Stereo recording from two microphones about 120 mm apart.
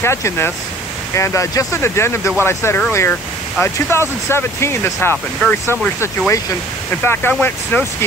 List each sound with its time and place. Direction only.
0.0 s speech: 20° left (ahead or behind)